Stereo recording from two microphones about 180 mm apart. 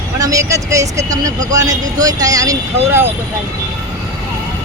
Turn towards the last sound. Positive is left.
turn(degrees=-15)  # may be behind; listen again after turning